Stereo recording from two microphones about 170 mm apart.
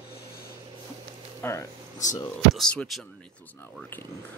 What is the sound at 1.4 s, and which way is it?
Speech, 15° left (ahead or behind).